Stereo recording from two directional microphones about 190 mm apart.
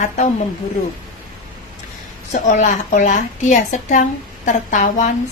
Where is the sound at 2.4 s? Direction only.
40° left (ahead or behind).